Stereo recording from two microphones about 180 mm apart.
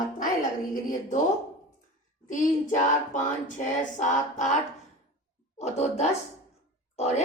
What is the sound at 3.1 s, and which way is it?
A woman's voice, 45° left (ahead or behind).